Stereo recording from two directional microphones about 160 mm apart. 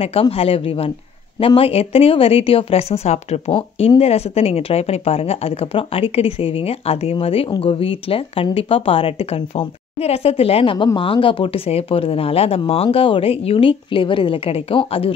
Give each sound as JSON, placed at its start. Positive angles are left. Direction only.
{"t": 0.0, "sound": "speech", "side_deg": 35}